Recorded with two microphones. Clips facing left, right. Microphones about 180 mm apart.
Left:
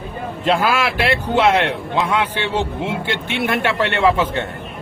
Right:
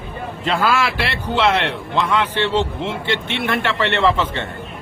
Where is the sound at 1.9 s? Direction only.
10° left (ahead or behind).